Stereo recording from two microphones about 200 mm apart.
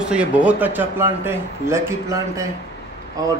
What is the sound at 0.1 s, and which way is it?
Speech, 5° right (ahead or behind).